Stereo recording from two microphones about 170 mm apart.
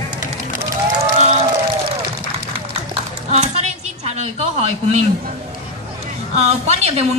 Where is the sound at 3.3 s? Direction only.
40° right (ahead or behind).